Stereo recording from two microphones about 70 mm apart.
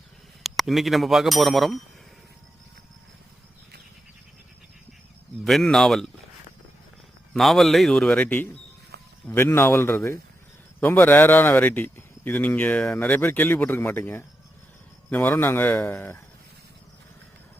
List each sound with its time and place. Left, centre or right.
0.4 s speech: centre
5.5 s speech: centre
7.3 s speech: centre
9.5 s a man's voice: left
10.8 s a man's voice: left